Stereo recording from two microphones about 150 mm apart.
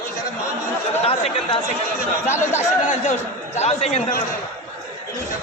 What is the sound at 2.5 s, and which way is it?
Speech, 55° left (ahead or behind).